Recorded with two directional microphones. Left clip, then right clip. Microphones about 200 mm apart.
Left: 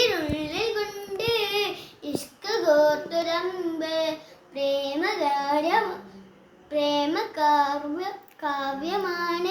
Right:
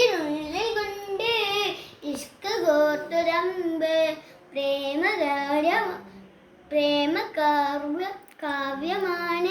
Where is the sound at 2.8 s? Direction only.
15° left (ahead or behind).